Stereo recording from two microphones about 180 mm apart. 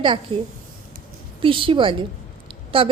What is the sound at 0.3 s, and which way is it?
A woman's voice, 30° right (ahead or behind).